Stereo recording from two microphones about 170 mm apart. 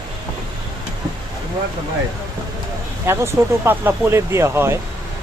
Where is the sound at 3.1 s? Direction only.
15° right (ahead or behind).